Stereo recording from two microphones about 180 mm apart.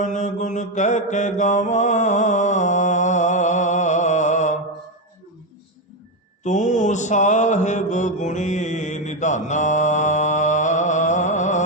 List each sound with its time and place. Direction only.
0.0 s mantra: 40° left (ahead or behind)
6.4 s mantra: 40° left (ahead or behind)